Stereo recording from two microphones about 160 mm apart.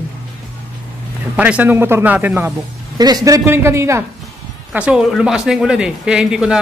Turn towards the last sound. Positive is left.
turn(degrees=-5)  # may be behind; listen again after turning